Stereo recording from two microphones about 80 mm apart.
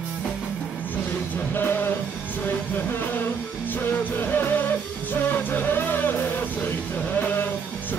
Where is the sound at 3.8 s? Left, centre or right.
Left.